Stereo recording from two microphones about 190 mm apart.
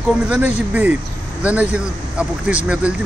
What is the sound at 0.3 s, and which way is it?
Speech, 10° right (ahead or behind).